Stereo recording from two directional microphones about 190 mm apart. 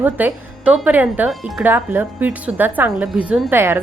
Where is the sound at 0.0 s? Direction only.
10° right (ahead or behind).